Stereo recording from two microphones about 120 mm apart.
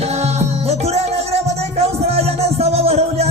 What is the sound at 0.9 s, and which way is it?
Music, 60° right (ahead or behind).